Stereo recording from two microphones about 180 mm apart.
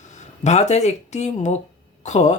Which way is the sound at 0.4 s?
40° left (ahead or behind).